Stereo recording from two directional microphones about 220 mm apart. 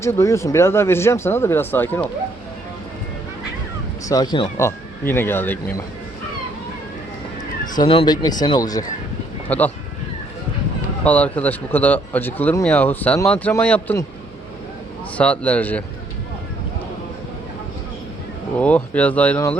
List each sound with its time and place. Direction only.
0.0 s speech: 15° left (ahead or behind)
4.1 s speech: 20° left (ahead or behind)
7.8 s speech: 20° left (ahead or behind)
11.0 s speech: 5° left (ahead or behind)
15.2 s speech: 5° left (ahead or behind)
18.6 s speech: 5° left (ahead or behind)